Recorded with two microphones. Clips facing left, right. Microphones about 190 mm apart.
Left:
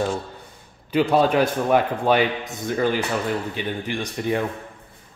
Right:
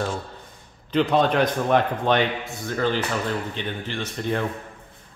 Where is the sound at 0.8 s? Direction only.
5° left (ahead or behind).